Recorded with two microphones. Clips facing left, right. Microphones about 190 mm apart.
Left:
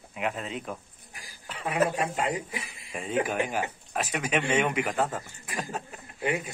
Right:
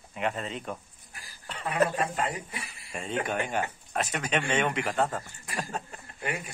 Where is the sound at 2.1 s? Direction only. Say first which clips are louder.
Left 2 dB; 15° left (ahead or behind).